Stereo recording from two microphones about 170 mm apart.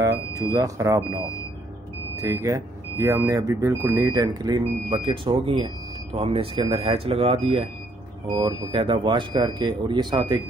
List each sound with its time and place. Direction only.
0.0 s speech: 15° right (ahead or behind)